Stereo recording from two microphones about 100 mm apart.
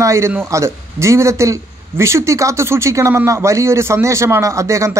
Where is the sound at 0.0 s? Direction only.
30° right (ahead or behind).